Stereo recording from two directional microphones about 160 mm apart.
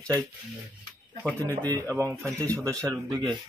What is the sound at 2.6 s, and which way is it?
Speech, 20° right (ahead or behind).